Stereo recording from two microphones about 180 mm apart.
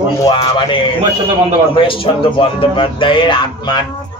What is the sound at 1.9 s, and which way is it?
Speech, 30° left (ahead or behind).